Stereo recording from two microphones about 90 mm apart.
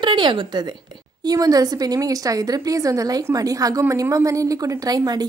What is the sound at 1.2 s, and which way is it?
A woman's voice, 45° right (ahead or behind).